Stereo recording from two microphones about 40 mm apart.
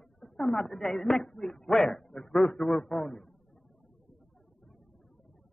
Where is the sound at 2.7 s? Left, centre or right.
Centre.